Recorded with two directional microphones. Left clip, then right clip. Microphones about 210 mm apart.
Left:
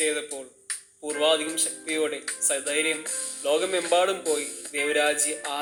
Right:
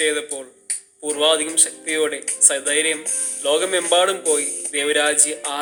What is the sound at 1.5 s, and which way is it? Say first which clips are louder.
Speech: right 7 dB; 15° right (ahead or behind).